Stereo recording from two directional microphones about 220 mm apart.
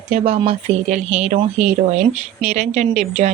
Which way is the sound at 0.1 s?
30° right (ahead or behind).